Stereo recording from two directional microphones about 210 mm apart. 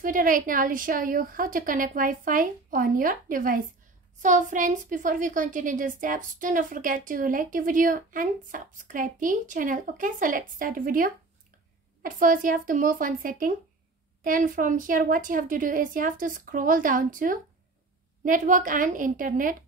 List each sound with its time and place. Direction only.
0.0 s a woman's voice: 40° right (ahead or behind)